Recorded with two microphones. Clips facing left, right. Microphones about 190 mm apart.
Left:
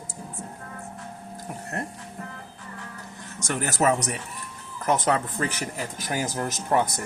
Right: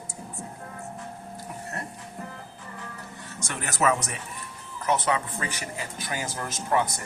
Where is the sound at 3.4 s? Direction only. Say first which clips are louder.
Left 2 dB; 35° left (ahead or behind).